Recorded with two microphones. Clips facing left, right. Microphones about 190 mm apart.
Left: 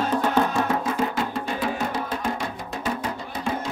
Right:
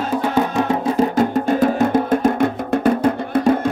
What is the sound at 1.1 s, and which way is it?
Music, 45° right (ahead or behind).